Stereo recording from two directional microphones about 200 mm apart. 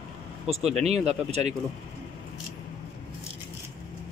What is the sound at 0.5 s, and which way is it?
Speech, 30° right (ahead or behind).